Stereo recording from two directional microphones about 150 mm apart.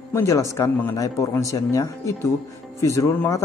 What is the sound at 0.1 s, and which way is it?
Speech, 20° left (ahead or behind).